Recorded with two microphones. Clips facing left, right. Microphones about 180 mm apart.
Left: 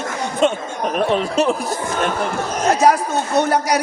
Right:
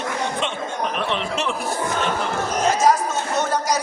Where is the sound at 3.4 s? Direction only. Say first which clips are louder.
Left 5 dB; 65° left (ahead or behind).